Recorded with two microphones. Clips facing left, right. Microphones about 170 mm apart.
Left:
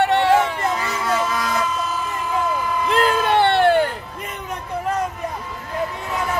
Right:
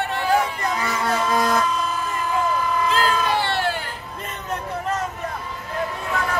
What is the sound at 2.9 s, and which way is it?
Vehicle, 60° left (ahead or behind).